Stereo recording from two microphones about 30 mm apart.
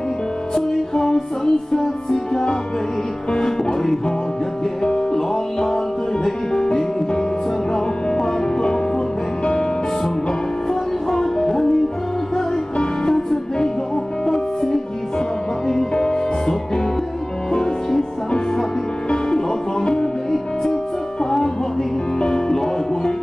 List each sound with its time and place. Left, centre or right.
0.9 s music: centre
3.3 s speech: left
4.8 s music: centre
8.1 s music: left
10.7 s music: centre
13.1 s music: centre
15.9 s music: left
19.3 s music: left
22.2 s music: centre